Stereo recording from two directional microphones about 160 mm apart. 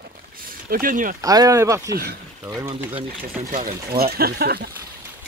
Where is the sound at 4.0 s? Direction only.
70° right (ahead or behind).